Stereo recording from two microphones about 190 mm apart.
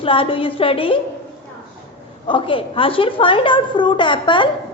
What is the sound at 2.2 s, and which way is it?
A woman's voice, 25° left (ahead or behind).